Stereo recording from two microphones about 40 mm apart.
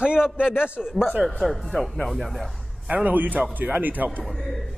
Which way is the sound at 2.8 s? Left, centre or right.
Right.